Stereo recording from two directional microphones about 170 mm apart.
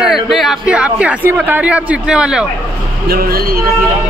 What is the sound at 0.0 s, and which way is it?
Speech, centre (ahead or behind).